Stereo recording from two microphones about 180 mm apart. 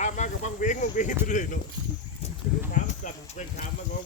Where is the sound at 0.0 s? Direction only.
40° left (ahead or behind).